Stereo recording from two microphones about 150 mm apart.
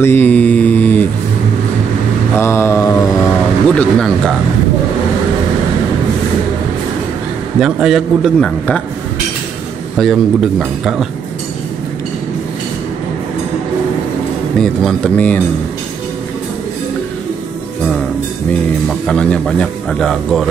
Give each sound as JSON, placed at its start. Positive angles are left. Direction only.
{"t": 0.0, "sound": "mantra", "side_deg": 15}
{"t": 2.3, "sound": "mantra", "side_deg": 15}
{"t": 3.6, "sound": "a man's voice", "side_deg": 5}
{"t": 7.6, "sound": "a man's voice", "side_deg": -5}
{"t": 9.9, "sound": "a man's voice", "side_deg": 0}
{"t": 14.6, "sound": "a man's voice", "side_deg": 5}
{"t": 18.9, "sound": "a man's voice", "side_deg": 5}